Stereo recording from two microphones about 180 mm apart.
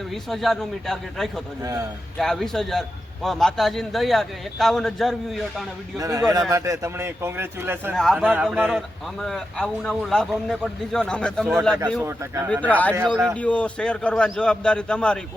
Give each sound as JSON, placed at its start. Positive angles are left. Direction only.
{"t": 0.3, "sound": "a man's voice", "side_deg": 0}
{"t": 6.0, "sound": "a man's voice", "side_deg": -20}
{"t": 7.9, "sound": "a man's voice", "side_deg": 0}
{"t": 9.2, "sound": "a man's voice", "side_deg": 5}
{"t": 13.0, "sound": "a man's voice", "side_deg": -10}
{"t": 13.2, "sound": "a man's voice", "side_deg": 5}